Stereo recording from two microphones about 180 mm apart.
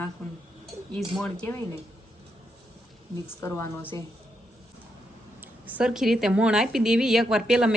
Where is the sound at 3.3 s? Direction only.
15° left (ahead or behind).